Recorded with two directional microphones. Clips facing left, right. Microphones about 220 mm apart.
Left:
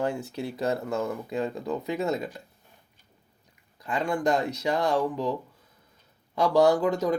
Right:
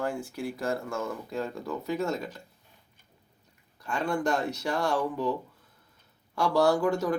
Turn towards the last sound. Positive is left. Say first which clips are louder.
# left 2 dB
turn(degrees=20)  # may be behind; listen again after turning